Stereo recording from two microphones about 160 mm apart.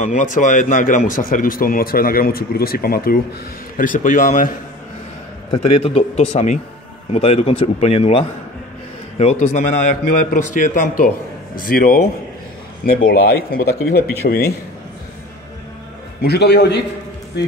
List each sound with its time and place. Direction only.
0.0 s speech: 50° left (ahead or behind)
5.5 s speech: 35° left (ahead or behind)
9.2 s a man's voice: 45° left (ahead or behind)
11.6 s a man's voice: 65° left (ahead or behind)
13.1 s speech: 90° left
16.2 s a man's voice: 90° left